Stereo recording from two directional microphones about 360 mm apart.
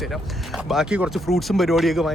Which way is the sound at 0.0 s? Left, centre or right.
Centre.